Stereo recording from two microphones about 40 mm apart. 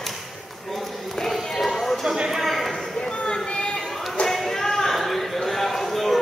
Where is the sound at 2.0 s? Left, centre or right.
Centre.